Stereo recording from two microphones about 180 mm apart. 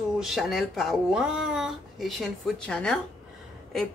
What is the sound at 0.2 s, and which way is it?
Speech, centre (ahead or behind).